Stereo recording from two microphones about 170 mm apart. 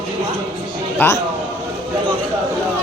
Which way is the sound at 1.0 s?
10° left (ahead or behind).